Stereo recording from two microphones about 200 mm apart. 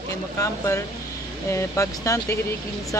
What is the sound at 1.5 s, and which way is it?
Speech, 15° left (ahead or behind).